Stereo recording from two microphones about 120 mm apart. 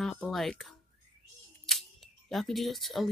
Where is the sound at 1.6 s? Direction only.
Centre (ahead or behind).